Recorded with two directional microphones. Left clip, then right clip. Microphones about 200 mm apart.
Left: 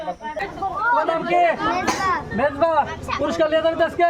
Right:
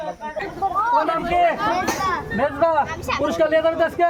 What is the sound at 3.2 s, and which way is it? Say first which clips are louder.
Speech: right 1 dB; 5° right (ahead or behind).